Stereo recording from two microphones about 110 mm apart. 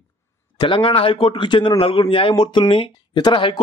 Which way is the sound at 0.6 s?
50° left (ahead or behind).